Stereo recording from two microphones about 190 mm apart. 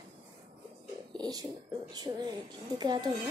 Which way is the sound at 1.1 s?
20° right (ahead or behind).